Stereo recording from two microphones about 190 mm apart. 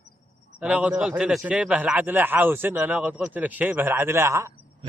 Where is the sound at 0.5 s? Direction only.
5° right (ahead or behind).